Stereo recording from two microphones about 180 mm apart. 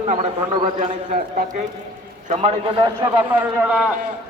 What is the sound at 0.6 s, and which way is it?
Speech, 45° right (ahead or behind).